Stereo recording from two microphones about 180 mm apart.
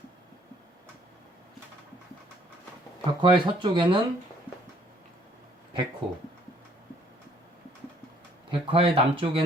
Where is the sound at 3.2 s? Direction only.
25° right (ahead or behind).